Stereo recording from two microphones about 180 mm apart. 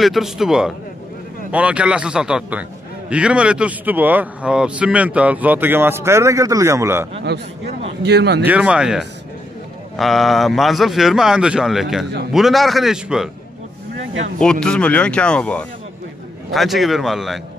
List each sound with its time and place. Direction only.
0.0 s speech: centre (ahead or behind)
7.2 s a man's voice: 65° right (ahead or behind)
8.5 s speech: 5° right (ahead or behind)
14.4 s speech: 5° left (ahead or behind)